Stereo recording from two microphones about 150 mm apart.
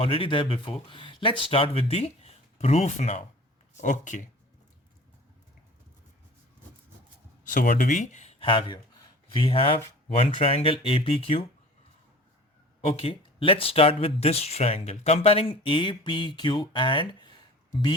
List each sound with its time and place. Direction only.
0.0 s speech: 35° left (ahead or behind); by 4.3 s 55° left (ahead or behind)
7.4 s speech: 65° left (ahead or behind); by 11.4 s 40° left (ahead or behind)
12.9 s speech: 40° left (ahead or behind)